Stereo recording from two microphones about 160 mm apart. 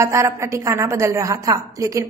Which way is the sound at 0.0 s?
20° right (ahead or behind).